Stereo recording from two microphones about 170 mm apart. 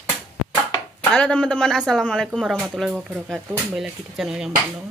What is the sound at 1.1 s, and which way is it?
Speech, 5° left (ahead or behind).